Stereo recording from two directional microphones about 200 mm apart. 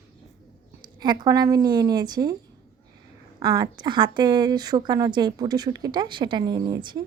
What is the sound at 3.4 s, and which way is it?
Speech, 20° right (ahead or behind).